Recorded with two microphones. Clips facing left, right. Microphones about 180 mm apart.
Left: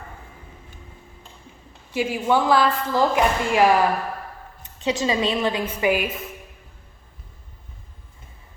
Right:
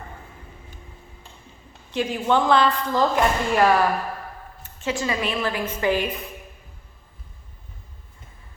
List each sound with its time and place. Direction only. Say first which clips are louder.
1.9 s a woman's voice: left 1 dB; 10° left (ahead or behind)